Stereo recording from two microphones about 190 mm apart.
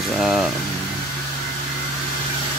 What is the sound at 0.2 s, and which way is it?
Speech, centre (ahead or behind).